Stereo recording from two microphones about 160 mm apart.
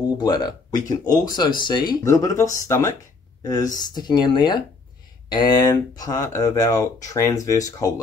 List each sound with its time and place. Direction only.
0.2 s speech: 25° left (ahead or behind)